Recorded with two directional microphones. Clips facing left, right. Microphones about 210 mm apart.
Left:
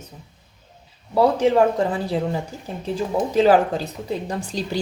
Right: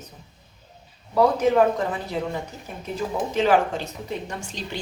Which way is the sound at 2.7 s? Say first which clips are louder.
Left 4 dB; 30° left (ahead or behind).